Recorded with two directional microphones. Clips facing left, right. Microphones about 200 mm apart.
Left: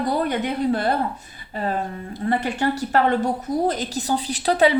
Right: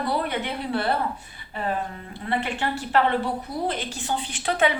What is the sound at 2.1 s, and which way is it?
Speech, 40° left (ahead or behind).